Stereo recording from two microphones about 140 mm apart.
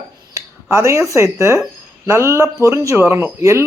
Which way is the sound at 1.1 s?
20° right (ahead or behind).